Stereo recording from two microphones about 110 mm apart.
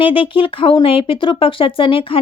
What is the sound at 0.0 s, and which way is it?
Speech, 55° left (ahead or behind).